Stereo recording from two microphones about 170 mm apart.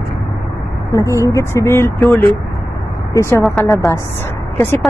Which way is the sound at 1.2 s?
15° left (ahead or behind).